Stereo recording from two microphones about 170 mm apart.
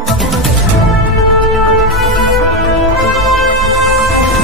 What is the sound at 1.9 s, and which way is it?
Music, centre (ahead or behind).